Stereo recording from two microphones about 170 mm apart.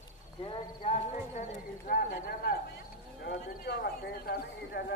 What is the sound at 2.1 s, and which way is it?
Speech, 65° left (ahead or behind).